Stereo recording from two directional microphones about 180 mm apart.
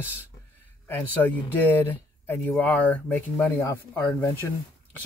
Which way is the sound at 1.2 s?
10° left (ahead or behind).